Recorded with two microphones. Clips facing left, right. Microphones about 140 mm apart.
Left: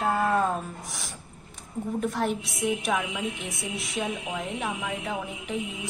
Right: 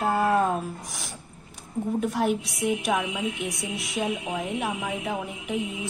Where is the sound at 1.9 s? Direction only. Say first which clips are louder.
Right 2 dB; centre (ahead or behind).